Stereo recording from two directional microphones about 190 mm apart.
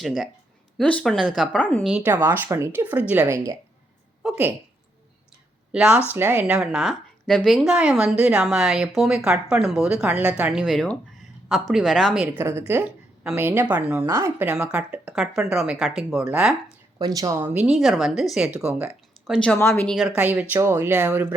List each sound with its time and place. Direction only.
0.0 s speech: centre (ahead or behind)
1.8 s speech: 5° right (ahead or behind)
4.2 s a woman's voice: 5° right (ahead or behind)
5.7 s speech: 5° right (ahead or behind)
17.0 s speech: 20° right (ahead or behind)
17.7 s speech: centre (ahead or behind)